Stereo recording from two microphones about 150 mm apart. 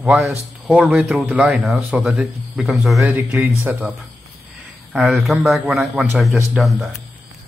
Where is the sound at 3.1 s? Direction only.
10° right (ahead or behind).